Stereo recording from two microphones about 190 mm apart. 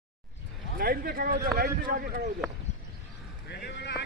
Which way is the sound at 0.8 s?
50° right (ahead or behind).